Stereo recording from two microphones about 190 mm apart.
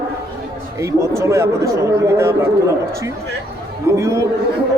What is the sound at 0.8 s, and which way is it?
Speech, 15° right (ahead or behind).